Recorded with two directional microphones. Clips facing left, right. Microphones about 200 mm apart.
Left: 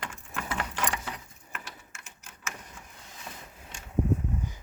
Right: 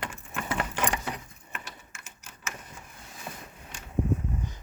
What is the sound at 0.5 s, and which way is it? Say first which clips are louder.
Keys jangling: right 3 dB; 20° right (ahead or behind).